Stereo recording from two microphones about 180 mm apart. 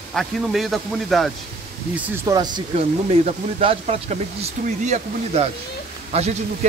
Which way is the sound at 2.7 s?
35° right (ahead or behind).